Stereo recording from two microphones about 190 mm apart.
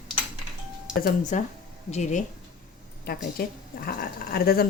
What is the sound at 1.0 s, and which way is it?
Speech, 50° left (ahead or behind).